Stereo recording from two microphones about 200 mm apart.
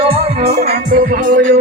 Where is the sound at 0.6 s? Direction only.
45° right (ahead or behind).